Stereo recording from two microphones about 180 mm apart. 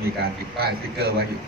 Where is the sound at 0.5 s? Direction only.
60° right (ahead or behind).